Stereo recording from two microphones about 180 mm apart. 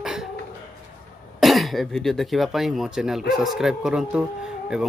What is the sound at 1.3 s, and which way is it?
Speech, centre (ahead or behind).